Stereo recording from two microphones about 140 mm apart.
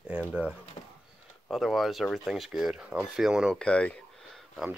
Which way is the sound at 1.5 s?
Centre (ahead or behind).